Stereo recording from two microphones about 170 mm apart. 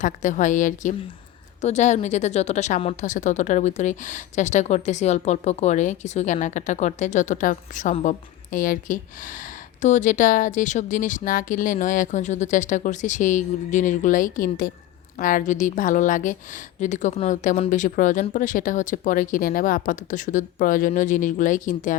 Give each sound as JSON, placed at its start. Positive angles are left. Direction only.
{"t": 0.0, "sound": "a woman's voice", "side_deg": 50}